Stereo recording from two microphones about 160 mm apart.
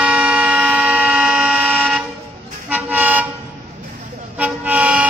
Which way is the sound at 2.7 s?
10° right (ahead or behind).